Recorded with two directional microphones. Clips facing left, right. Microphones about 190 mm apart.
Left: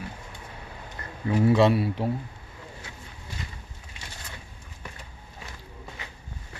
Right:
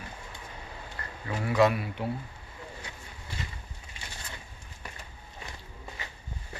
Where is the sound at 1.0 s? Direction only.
20° left (ahead or behind).